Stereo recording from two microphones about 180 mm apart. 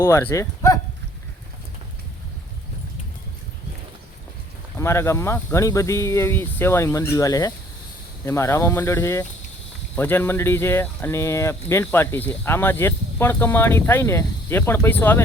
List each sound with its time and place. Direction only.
0.0 s speech: 15° left (ahead or behind)
4.8 s speech: 15° left (ahead or behind)